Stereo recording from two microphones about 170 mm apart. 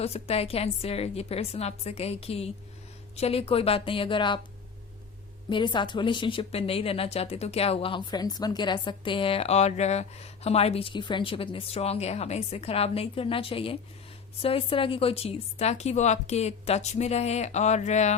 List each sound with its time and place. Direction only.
0.0 s speech: 35° left (ahead or behind)
5.5 s speech: 25° left (ahead or behind); by 18.1 s 45° left (ahead or behind)